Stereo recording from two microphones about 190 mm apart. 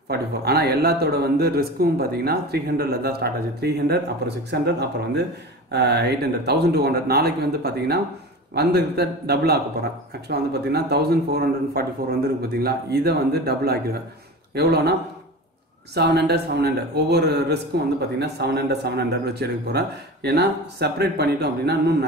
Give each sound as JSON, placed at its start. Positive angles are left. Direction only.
{"t": 0.1, "sound": "a man's voice", "side_deg": -60}